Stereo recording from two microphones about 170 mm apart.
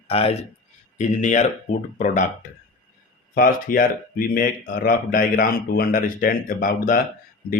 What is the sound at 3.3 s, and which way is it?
Speech, 55° left (ahead or behind).